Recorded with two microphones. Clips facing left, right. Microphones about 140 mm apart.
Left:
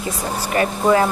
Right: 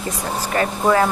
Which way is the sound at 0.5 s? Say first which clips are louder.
Left 1 dB; 20° left (ahead or behind).